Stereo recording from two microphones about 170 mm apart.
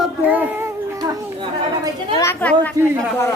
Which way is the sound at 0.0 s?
10° right (ahead or behind).